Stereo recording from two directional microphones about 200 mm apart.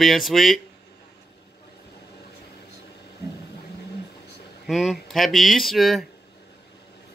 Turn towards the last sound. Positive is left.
turn(degrees=0)  # may be behind; listen again after turning